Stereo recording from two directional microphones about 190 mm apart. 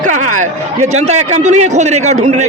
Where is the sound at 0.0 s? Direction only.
40° right (ahead or behind).